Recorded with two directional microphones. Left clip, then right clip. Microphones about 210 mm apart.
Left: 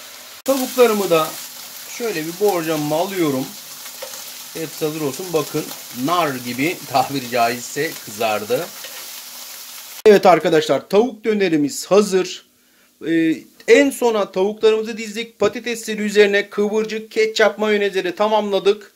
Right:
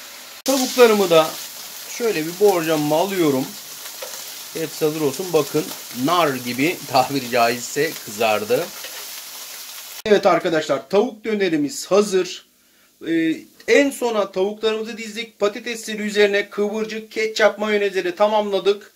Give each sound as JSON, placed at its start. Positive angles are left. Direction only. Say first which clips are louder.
{"t": 0.7, "sound": "speech", "louder": "right 2 dB", "side_deg": -5}
{"t": 4.6, "sound": "speech", "louder": "right 2 dB", "side_deg": -5}
{"t": 10.0, "sound": "speech", "louder": "left 5 dB", "side_deg": 45}